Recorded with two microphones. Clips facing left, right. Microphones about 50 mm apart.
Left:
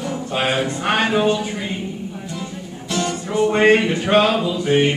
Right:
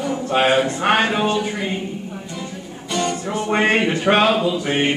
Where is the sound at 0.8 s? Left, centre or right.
Centre.